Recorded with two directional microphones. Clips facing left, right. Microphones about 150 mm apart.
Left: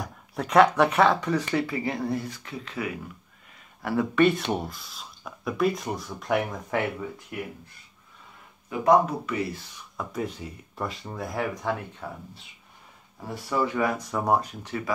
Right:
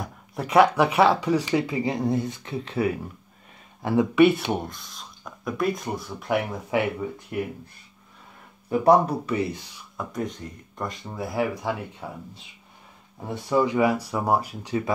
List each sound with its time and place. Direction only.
0.0 s speech: 5° right (ahead or behind); by 2.9 s 30° right (ahead or behind)
3.8 s speech: 15° right (ahead or behind)
8.6 s speech: 35° right (ahead or behind)
9.9 s speech: 5° left (ahead or behind)
13.3 s speech: 20° right (ahead or behind)